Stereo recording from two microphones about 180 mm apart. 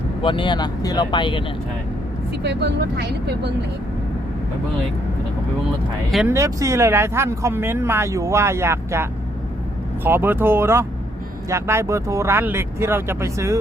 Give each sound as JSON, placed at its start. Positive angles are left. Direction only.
{"t": 0.2, "sound": "speech", "side_deg": 30}
{"t": 2.4, "sound": "speech", "side_deg": -70}
{"t": 6.2, "sound": "speech", "side_deg": -15}